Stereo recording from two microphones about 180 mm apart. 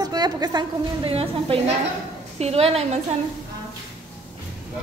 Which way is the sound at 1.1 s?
35° right (ahead or behind).